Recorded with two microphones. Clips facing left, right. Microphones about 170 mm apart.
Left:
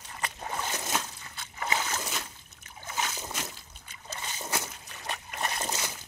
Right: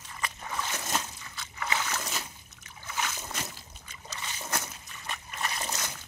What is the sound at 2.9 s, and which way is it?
Splash, 35° left (ahead or behind).